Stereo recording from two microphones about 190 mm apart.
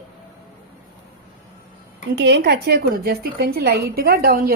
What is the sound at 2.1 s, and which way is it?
A woman's voice, 60° right (ahead or behind).